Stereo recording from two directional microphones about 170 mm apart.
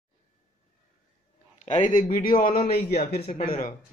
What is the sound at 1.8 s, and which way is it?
A man's voice, 50° left (ahead or behind).